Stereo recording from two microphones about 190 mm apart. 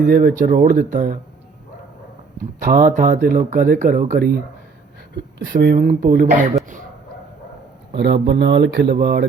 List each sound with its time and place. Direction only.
0.0 s speech: 45° right (ahead or behind)
2.6 s speech: 45° right (ahead or behind)
5.5 s speech: 55° right (ahead or behind)
7.9 s speech: 60° right (ahead or behind)